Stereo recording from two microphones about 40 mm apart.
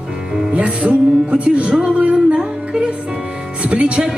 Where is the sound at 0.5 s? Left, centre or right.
Right.